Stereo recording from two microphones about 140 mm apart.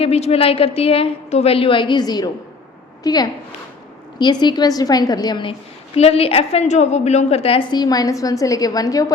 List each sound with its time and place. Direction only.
0.0 s a woman's voice: 45° left (ahead or behind)
7.7 s a woman's voice: 30° left (ahead or behind)